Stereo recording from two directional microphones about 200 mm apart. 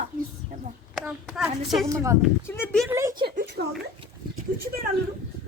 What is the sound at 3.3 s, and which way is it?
Speech, 55° right (ahead or behind).